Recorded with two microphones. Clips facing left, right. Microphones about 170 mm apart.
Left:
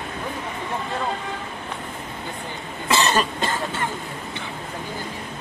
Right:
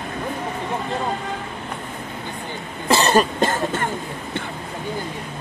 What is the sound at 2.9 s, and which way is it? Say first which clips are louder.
Cough: right 4 dB; 40° right (ahead or behind).